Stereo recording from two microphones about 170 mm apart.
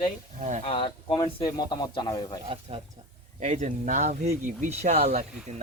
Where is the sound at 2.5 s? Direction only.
35° right (ahead or behind).